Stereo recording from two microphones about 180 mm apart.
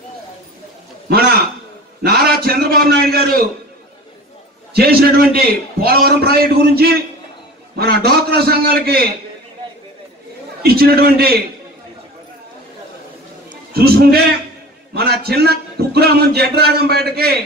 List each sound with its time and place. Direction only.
1.0 s a sound: 60° right (ahead or behind)
4.7 s a man's voice: 60° right (ahead or behind)
10.6 s a man's voice: 60° right (ahead or behind)
13.7 s a man's voice: 60° right (ahead or behind)